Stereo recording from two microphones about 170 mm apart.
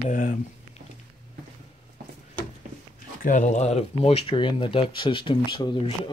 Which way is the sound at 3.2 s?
50° left (ahead or behind).